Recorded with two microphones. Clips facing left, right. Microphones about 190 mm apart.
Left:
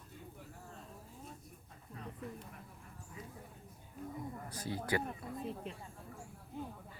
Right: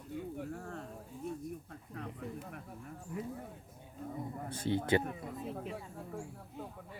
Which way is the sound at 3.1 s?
65° right (ahead or behind).